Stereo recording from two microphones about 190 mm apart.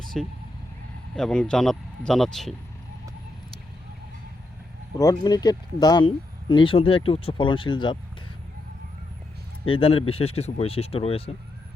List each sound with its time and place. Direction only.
0.1 s speech: centre (ahead or behind)
4.9 s speech: 20° left (ahead or behind)
9.7 s speech: 30° left (ahead or behind)